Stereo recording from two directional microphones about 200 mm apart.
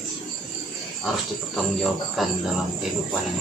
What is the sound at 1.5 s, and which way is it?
Speech, centre (ahead or behind).